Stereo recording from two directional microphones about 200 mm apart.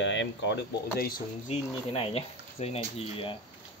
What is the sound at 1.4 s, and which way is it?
Speech, 30° left (ahead or behind).